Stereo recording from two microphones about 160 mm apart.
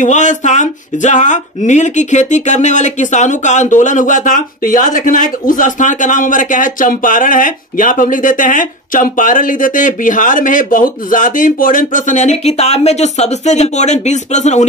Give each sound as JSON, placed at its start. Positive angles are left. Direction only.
{"t": 0.0, "sound": "speech", "side_deg": 50}